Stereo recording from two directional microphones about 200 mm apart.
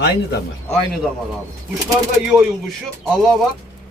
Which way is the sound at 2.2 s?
Centre (ahead or behind).